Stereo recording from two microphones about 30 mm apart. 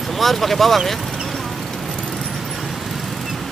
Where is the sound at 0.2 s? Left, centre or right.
Centre.